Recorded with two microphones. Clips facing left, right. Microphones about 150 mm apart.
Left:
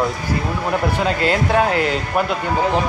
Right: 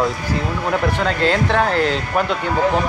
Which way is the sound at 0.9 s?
10° left (ahead or behind).